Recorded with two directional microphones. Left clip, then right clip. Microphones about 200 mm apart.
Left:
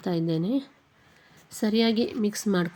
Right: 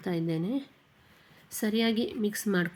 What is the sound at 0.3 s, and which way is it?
A woman's voice, 10° left (ahead or behind).